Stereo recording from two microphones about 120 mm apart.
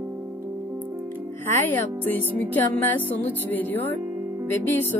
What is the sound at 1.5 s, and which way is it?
Speech, 15° left (ahead or behind).